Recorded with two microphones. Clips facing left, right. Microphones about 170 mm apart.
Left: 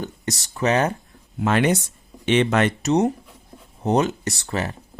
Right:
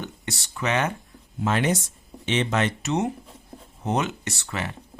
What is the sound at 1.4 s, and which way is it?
Speech, 65° left (ahead or behind).